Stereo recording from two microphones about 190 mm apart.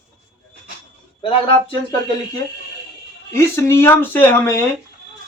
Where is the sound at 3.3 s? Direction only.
10° left (ahead or behind).